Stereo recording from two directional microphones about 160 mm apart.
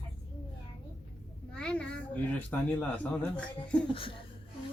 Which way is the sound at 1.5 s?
5° left (ahead or behind).